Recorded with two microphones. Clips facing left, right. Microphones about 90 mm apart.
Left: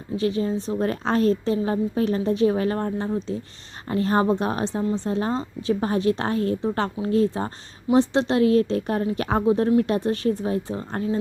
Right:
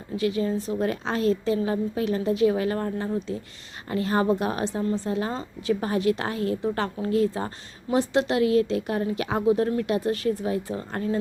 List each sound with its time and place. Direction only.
0.2 s a woman's voice: 30° left (ahead or behind)
5.0 s a woman's voice: 30° left (ahead or behind)